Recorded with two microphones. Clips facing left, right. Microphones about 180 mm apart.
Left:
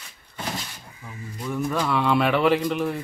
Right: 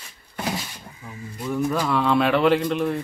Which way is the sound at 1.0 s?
Centre (ahead or behind).